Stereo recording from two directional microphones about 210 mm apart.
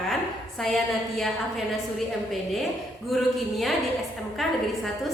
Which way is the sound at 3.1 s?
Centre (ahead or behind).